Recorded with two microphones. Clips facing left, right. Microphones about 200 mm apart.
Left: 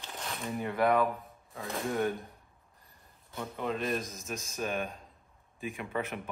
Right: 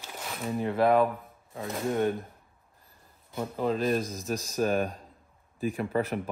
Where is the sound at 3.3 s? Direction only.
35° right (ahead or behind).